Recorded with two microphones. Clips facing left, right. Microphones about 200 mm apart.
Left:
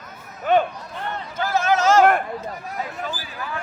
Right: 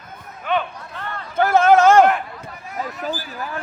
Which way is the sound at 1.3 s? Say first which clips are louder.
Right 8 dB; 55° right (ahead or behind).